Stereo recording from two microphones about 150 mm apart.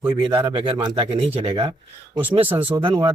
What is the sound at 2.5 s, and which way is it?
Speech, 10° right (ahead or behind).